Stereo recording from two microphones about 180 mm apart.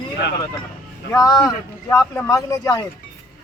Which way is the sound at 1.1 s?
20° left (ahead or behind).